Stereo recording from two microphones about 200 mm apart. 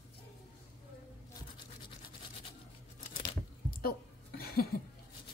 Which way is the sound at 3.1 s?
40° left (ahead or behind).